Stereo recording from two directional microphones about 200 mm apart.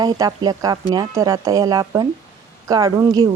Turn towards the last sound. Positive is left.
turn(degrees=-20)  # may be behind; listen again after turning